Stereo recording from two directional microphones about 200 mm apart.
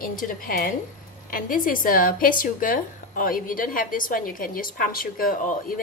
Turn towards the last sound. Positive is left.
turn(degrees=40)  # may be behind; listen again after turning